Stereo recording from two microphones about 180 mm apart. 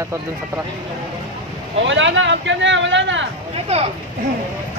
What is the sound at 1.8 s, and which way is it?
Speech, 90° right.